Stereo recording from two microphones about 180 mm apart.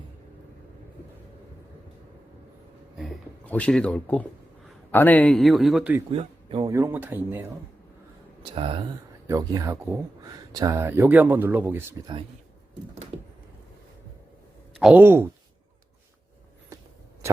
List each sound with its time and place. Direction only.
3.0 s speech: 5° left (ahead or behind)
6.1 s speech: 30° right (ahead or behind)
6.7 s speech: 15° right (ahead or behind)
8.5 s speech: 30° right (ahead or behind)
9.2 s speech: 20° right (ahead or behind)
13.1 s a sound: 30° right (ahead or behind)
14.7 s speech: centre (ahead or behind)